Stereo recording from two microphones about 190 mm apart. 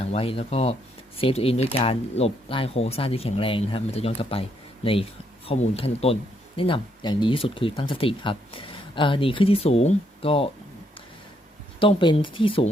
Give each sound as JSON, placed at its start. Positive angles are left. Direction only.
{"t": 0.0, "sound": "speech", "side_deg": 30}
{"t": 11.8, "sound": "speech", "side_deg": 25}